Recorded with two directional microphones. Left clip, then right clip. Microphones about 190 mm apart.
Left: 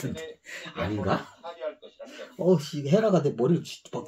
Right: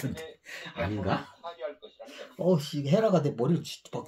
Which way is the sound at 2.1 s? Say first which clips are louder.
Left 3 dB; 10° right (ahead or behind).